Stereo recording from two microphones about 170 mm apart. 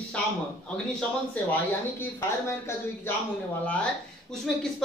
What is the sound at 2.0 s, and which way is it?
A man's voice, 15° left (ahead or behind).